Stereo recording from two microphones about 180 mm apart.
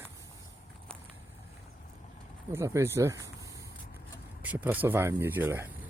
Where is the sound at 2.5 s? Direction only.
15° right (ahead or behind).